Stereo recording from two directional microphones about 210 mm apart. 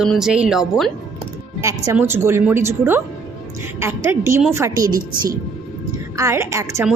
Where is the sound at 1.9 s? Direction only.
10° right (ahead or behind).